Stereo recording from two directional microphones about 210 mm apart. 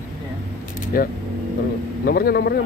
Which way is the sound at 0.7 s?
45° left (ahead or behind).